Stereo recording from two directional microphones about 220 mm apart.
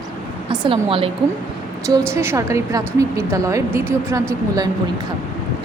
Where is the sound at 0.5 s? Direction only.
20° right (ahead or behind).